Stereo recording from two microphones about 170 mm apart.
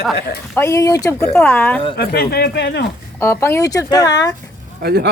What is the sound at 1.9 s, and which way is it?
Speech, 70° left (ahead or behind).